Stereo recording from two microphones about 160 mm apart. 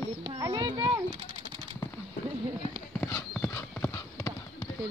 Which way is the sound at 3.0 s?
15° left (ahead or behind).